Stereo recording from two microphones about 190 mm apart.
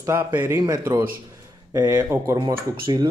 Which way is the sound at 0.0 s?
10° right (ahead or behind).